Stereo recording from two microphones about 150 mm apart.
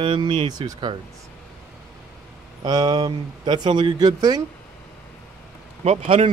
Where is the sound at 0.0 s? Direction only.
35° right (ahead or behind).